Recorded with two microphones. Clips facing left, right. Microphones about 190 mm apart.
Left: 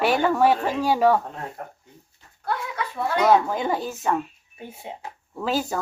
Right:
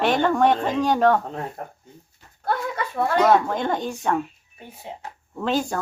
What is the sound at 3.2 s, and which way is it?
Speech, 5° left (ahead or behind).